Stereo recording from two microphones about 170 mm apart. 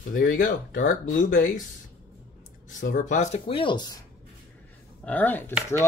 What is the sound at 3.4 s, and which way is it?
Speech, 30° left (ahead or behind).